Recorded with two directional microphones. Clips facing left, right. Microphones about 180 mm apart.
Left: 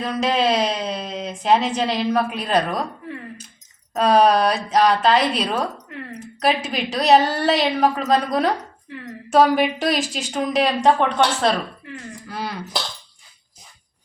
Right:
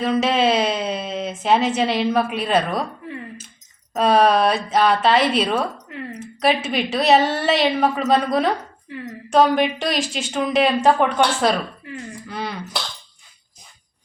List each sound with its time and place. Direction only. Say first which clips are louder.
0.2 s a woman's voice: left 2 dB; 5° right (ahead or behind)